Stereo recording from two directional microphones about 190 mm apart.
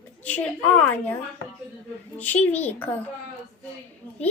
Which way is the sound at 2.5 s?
10° left (ahead or behind).